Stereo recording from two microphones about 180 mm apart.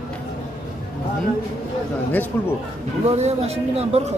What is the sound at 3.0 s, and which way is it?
A man's voice, 35° right (ahead or behind).